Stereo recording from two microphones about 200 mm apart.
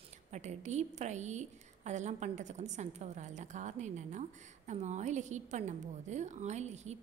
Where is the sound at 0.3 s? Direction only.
35° right (ahead or behind).